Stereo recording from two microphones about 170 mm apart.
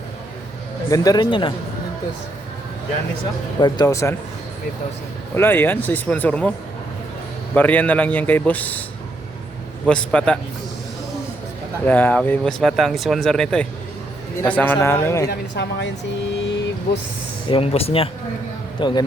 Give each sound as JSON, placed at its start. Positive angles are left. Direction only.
{"t": 0.9, "sound": "speech", "side_deg": 20}
{"t": 3.6, "sound": "speech", "side_deg": 20}
{"t": 5.3, "sound": "a man's voice", "side_deg": 15}
{"t": 7.5, "sound": "a man's voice", "side_deg": 10}
{"t": 9.8, "sound": "speech", "side_deg": 5}
{"t": 11.9, "sound": "a man's voice", "side_deg": 10}
{"t": 15.3, "sound": "speech", "side_deg": 90}
{"t": 16.4, "sound": "vehicle", "side_deg": 90}
{"t": 17.5, "sound": "speech", "side_deg": 35}